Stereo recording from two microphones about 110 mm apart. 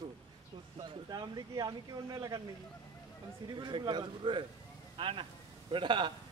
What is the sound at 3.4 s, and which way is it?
A man's voice, 40° right (ahead or behind).